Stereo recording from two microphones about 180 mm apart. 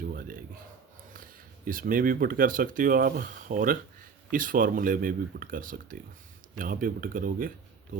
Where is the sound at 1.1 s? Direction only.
50° right (ahead or behind).